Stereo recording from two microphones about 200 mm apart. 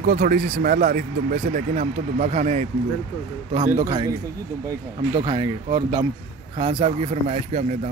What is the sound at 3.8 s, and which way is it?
Speech, 20° right (ahead or behind).